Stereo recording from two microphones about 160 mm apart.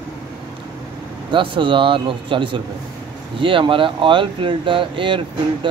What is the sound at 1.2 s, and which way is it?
Speech, 30° right (ahead or behind).